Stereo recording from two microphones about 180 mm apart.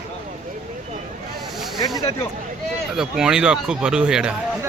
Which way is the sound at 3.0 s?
5° right (ahead or behind).